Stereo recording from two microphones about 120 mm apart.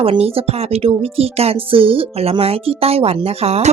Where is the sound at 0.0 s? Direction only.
50° right (ahead or behind).